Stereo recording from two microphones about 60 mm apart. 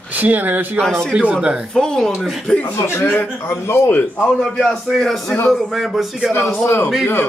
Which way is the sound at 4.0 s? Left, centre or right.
Left.